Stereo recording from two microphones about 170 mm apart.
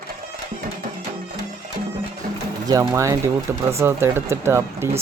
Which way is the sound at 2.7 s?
20° right (ahead or behind).